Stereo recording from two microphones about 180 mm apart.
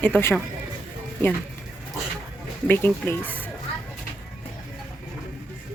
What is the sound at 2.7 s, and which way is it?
Speech, 10° left (ahead or behind).